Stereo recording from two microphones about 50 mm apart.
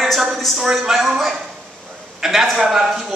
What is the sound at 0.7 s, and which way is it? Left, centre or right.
Speech, centre.